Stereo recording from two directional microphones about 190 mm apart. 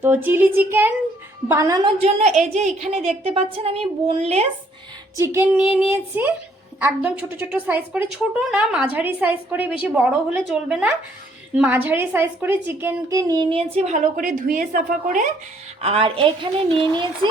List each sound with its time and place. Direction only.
0.0 s a woman's voice: 10° right (ahead or behind)
2.0 s a woman's voice: 35° right (ahead or behind)
5.1 s a woman's voice: 15° right (ahead or behind)
13.7 s a woman's voice: 40° right (ahead or behind)
15.8 s a woman's voice: 30° right (ahead or behind)